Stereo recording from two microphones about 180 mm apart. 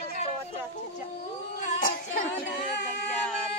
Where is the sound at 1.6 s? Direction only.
45° left (ahead or behind).